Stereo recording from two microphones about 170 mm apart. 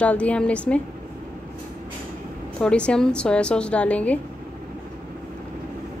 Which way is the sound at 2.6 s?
5° left (ahead or behind).